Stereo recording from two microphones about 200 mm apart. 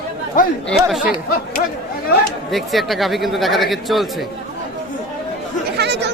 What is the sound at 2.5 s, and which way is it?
A man's voice, centre (ahead or behind).